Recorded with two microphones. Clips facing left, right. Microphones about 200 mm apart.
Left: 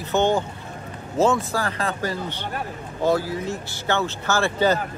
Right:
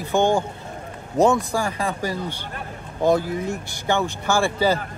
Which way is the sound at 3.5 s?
15° right (ahead or behind).